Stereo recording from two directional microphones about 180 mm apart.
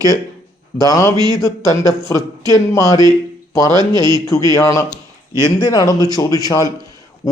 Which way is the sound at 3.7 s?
25° right (ahead or behind).